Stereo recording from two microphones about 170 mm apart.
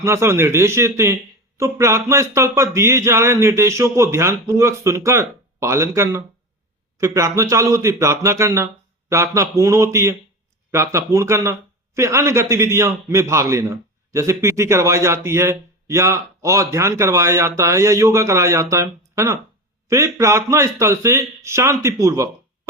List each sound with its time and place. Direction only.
0.0 s a man's voice: 15° right (ahead or behind)